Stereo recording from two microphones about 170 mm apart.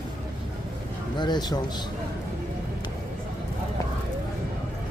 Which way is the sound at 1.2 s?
25° left (ahead or behind).